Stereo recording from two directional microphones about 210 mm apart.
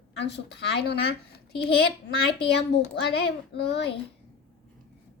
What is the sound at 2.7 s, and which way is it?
A woman's voice, 50° left (ahead or behind).